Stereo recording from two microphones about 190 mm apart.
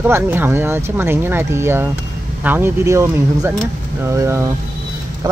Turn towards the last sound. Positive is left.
turn(degrees=-15)  # may be behind; listen again after turning